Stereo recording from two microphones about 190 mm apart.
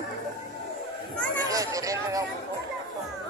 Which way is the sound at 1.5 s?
20° right (ahead or behind).